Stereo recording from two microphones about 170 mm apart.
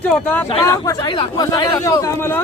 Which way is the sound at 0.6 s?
20° left (ahead or behind).